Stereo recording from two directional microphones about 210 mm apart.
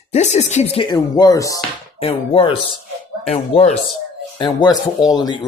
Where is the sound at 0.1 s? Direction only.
30° left (ahead or behind); by 1.6 s 15° left (ahead or behind).